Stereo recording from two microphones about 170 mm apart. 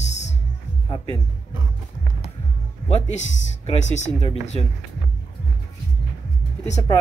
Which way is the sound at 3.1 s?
40° left (ahead or behind).